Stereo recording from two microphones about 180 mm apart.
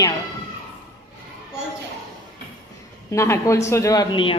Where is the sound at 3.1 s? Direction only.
15° left (ahead or behind).